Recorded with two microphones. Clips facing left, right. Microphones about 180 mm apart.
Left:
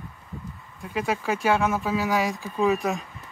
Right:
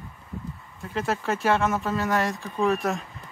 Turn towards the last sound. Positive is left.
turn(degrees=0)  # may be behind; listen again after turning